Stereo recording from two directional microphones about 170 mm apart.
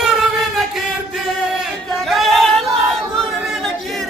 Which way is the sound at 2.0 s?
Centre (ahead or behind).